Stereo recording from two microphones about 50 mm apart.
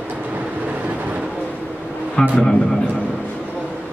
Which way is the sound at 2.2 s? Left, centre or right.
Centre.